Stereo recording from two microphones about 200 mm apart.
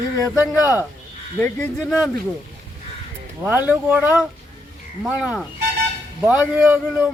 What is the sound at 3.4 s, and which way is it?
A man's voice, 10° right (ahead or behind).